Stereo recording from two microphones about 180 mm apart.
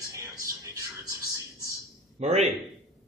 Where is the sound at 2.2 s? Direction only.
40° right (ahead or behind).